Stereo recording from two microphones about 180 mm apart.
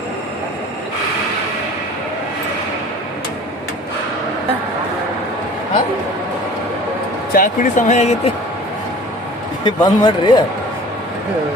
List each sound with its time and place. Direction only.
7.3 s speech: 50° left (ahead or behind)
9.6 s a man's voice: 25° left (ahead or behind)